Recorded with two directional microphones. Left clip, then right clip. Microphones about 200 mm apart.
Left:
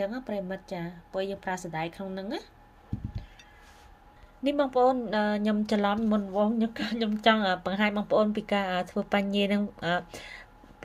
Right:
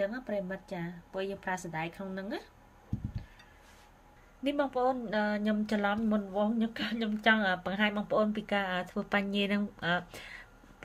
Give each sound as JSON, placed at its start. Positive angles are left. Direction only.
{"t": 0.0, "sound": "speech", "side_deg": 20}
{"t": 4.4, "sound": "speech", "side_deg": 20}